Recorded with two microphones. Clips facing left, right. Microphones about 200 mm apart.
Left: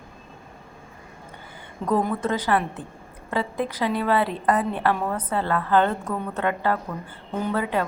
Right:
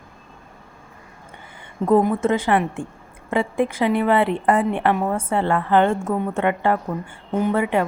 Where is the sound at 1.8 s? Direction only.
25° right (ahead or behind).